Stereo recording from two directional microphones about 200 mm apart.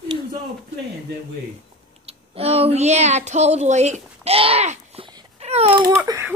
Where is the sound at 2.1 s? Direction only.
30° right (ahead or behind).